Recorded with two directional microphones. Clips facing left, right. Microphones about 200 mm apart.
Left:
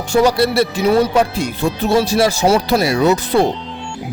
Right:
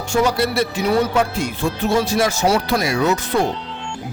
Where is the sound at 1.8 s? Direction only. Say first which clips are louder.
Left 4 dB; 35° left (ahead or behind).